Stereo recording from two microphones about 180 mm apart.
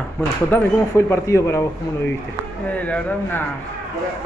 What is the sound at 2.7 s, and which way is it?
Speech, 10° left (ahead or behind).